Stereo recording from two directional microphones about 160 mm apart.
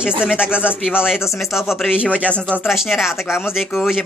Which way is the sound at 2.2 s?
5° left (ahead or behind).